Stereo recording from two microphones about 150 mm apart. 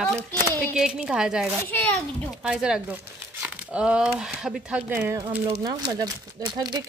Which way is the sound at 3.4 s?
5° right (ahead or behind).